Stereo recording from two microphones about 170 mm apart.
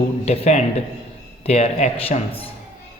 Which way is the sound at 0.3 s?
40° left (ahead or behind).